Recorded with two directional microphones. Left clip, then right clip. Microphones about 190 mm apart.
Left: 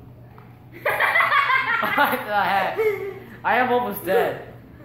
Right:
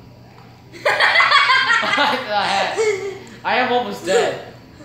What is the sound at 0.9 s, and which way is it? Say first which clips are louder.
Snicker: right 5 dB; 40° right (ahead or behind).